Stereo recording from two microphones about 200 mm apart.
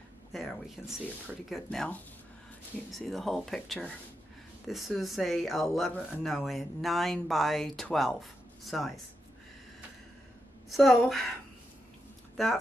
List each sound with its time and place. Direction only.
0.3 s speech: centre (ahead or behind)
10.7 s speech: centre (ahead or behind)